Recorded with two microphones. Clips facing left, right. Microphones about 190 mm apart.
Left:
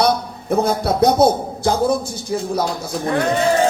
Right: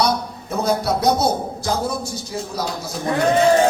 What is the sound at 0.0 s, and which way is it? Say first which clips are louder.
Speech: left 3 dB; 55° left (ahead or behind).